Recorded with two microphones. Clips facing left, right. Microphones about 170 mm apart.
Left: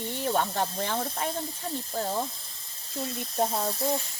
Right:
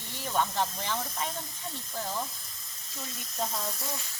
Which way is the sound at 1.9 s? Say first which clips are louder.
Left 4 dB; 35° left (ahead or behind).